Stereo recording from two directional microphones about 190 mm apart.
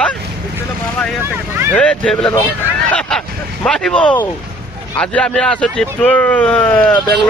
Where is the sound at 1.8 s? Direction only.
5° left (ahead or behind).